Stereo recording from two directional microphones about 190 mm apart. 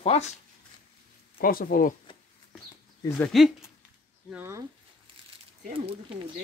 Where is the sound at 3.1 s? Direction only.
5° left (ahead or behind).